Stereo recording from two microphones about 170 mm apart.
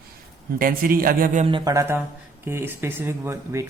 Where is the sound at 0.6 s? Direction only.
60° right (ahead or behind).